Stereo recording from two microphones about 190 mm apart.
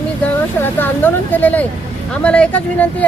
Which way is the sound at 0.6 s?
10° left (ahead or behind).